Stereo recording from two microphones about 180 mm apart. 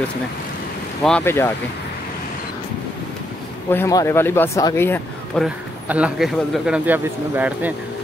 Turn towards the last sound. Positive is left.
turn(degrees=-10)  # may be behind; listen again after turning